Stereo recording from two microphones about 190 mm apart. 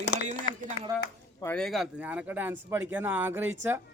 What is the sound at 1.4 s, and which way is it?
A man's voice, 5° left (ahead or behind).